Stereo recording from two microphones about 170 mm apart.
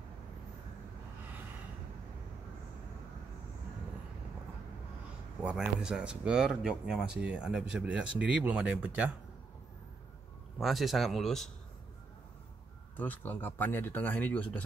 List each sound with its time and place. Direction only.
5.4 s speech: 5° right (ahead or behind)
10.6 s speech: centre (ahead or behind)
12.9 s speech: 10° left (ahead or behind)